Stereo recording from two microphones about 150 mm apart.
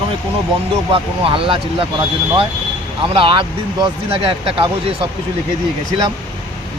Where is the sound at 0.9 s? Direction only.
35° right (ahead or behind).